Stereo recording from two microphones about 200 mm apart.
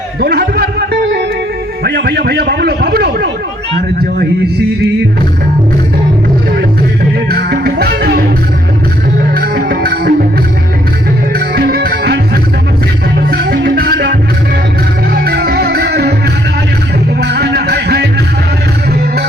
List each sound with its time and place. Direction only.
0.2 s a sound: 50° right (ahead or behind)
1.8 s a man's voice: 55° right (ahead or behind)
7.3 s music: 55° right (ahead or behind)
9.3 s music: 50° right (ahead or behind)
11.3 s music: 55° right (ahead or behind)
15.2 s music: 50° right (ahead or behind)
17.2 s music: 55° right (ahead or behind)